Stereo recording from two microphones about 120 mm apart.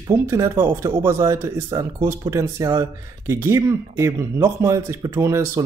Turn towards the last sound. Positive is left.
turn(degrees=-25)  # may be behind; listen again after turning